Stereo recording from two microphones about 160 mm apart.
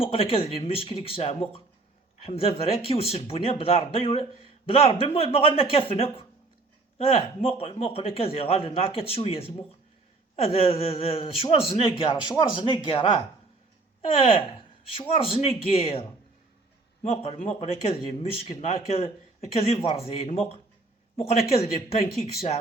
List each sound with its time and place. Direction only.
0.0 s a man's voice: 35° left (ahead or behind)